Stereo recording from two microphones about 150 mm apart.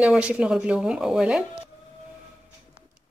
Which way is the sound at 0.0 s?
10° right (ahead or behind).